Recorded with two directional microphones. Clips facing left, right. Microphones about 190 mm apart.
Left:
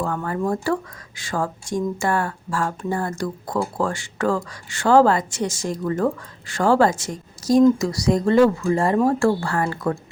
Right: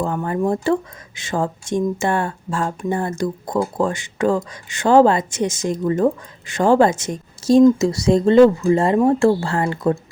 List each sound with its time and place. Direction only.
0.0 s speech: 20° right (ahead or behind)